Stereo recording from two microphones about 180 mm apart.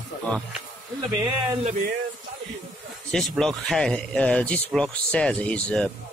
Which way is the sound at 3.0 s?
Centre (ahead or behind).